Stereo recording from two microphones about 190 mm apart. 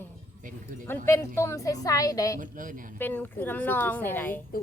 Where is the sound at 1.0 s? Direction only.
15° left (ahead or behind).